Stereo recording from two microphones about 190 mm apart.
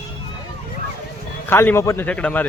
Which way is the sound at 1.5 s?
10° left (ahead or behind).